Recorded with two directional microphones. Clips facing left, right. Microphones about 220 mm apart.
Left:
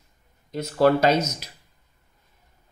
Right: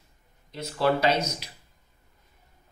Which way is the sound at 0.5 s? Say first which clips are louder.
Left 6 dB; 45° left (ahead or behind).